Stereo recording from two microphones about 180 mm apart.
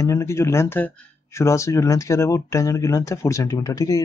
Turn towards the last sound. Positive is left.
turn(degrees=20)  # may be behind; listen again after turning